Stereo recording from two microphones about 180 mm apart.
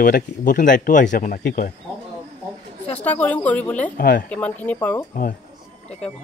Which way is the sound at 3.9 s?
50° left (ahead or behind).